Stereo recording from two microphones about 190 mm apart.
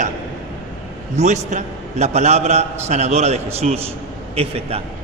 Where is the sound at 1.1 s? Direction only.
40° right (ahead or behind).